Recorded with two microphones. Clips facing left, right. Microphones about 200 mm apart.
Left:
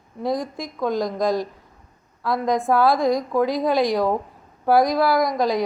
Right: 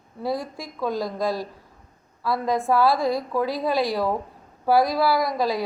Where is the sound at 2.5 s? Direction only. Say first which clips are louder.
Left 2 dB; 15° left (ahead or behind).